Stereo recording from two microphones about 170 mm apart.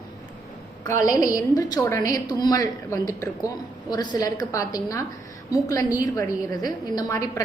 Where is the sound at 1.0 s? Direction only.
20° left (ahead or behind).